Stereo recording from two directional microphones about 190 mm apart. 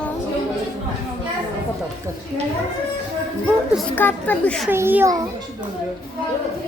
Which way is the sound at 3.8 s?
10° left (ahead or behind).